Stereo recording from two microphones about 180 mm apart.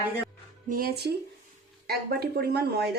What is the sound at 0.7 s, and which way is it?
A woman's voice, 55° right (ahead or behind).